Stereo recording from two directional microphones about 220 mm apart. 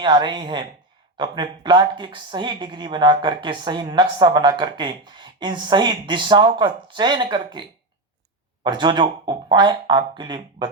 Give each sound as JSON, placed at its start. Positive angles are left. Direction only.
{"t": 0.0, "sound": "speech", "side_deg": -20}
{"t": 8.6, "sound": "speech", "side_deg": -20}